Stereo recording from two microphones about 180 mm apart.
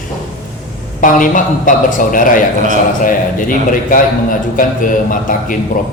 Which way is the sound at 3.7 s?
50° left (ahead or behind).